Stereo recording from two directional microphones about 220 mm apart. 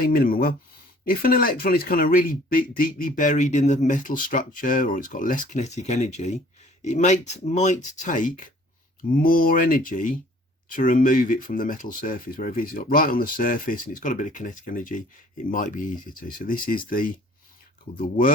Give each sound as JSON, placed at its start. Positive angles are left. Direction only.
{"t": 0.0, "sound": "speech", "side_deg": 40}